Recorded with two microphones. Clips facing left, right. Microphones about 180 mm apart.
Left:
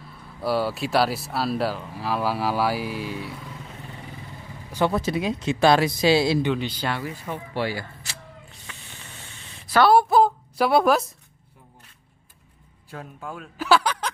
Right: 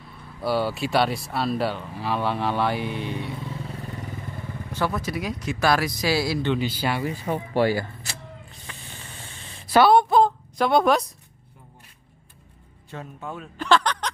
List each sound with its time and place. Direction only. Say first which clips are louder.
0.4 s speech: even; centre (ahead or behind)
4.9 s speech: left 4 dB; 25° left (ahead or behind)
6.5 s speech: right 2 dB; 5° right (ahead or behind)
7.2 s speech: right 7 dB; 45° right (ahead or behind)
8.6 s vehicle: right 4 dB; 35° right (ahead or behind)
9.8 s speech: left 2 dB; 5° left (ahead or behind)
12.9 s speech: right 1 dB; centre (ahead or behind)